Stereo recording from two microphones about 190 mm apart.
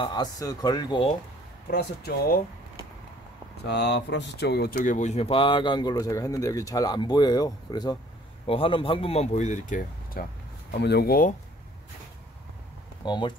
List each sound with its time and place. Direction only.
0.0 s speech: 20° left (ahead or behind)
1.7 s speech: 55° left (ahead or behind)
3.6 s speech: 65° left (ahead or behind); by 10.2 s 45° left (ahead or behind)
10.7 s speech: 60° left (ahead or behind)
13.0 s speech: 25° left (ahead or behind)